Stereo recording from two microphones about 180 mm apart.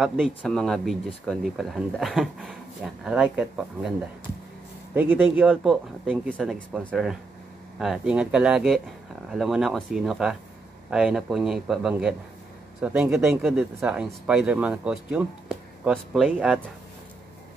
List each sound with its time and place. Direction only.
0.0 s speech: centre (ahead or behind)
4.9 s speech: 10° right (ahead or behind); by 7.1 s 5° left (ahead or behind)
7.8 s speech: 5° right (ahead or behind)